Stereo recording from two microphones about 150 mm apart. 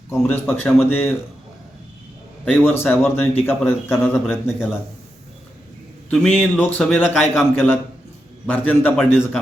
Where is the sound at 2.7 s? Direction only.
15° left (ahead or behind).